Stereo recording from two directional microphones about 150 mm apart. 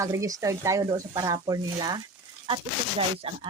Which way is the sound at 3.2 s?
40° right (ahead or behind).